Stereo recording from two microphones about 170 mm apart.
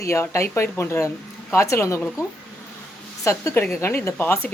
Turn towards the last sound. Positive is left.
turn(degrees=10)  # may be behind; listen again after turning